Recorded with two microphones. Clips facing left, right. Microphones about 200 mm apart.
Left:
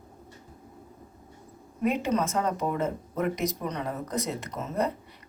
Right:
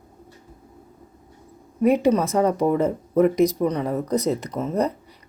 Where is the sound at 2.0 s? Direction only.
35° right (ahead or behind).